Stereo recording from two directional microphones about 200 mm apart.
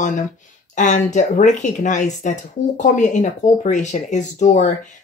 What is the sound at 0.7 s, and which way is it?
Speech, 40° left (ahead or behind).